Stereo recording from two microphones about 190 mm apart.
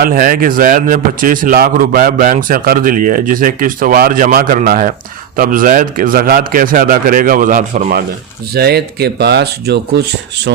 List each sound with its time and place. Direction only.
0.0 s a man's voice: 50° right (ahead or behind)
8.5 s speech: 55° right (ahead or behind)